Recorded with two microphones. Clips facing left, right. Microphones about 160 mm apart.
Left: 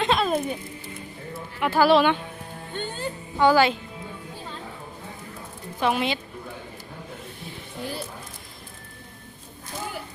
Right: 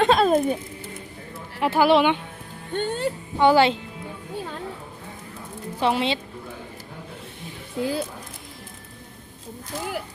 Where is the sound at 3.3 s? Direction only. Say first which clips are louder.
Right 1 dB; 25° right (ahead or behind).